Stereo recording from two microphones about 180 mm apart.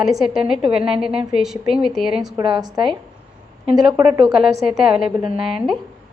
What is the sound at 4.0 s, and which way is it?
Speech, 25° right (ahead or behind).